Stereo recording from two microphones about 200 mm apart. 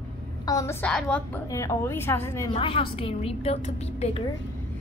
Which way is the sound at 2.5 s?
25° left (ahead or behind).